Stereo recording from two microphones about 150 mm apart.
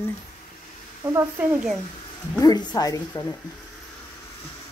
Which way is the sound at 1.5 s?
5° right (ahead or behind).